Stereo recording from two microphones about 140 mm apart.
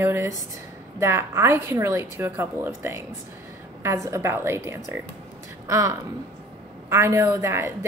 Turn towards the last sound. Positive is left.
turn(degrees=-20)  # may be behind; listen again after turning